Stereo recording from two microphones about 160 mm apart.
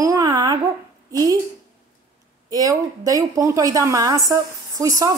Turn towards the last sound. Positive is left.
turn(degrees=-20)  # may be behind; listen again after turning